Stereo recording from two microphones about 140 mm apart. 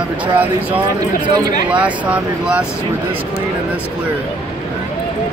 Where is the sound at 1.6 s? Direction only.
10° right (ahead or behind).